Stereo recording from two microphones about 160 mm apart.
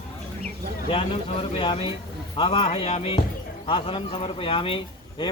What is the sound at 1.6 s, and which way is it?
Speech, 30° left (ahead or behind).